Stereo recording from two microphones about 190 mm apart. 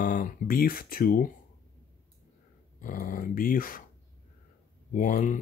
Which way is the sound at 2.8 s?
45° left (ahead or behind).